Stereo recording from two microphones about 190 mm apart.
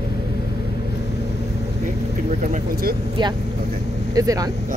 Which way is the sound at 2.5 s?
55° right (ahead or behind).